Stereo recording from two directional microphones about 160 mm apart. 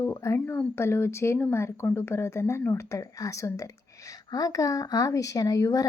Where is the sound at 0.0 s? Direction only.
20° left (ahead or behind).